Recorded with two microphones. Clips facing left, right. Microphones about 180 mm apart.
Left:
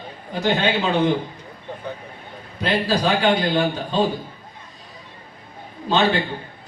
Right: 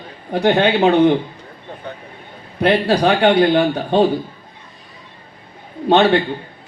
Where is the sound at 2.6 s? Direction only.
60° right (ahead or behind).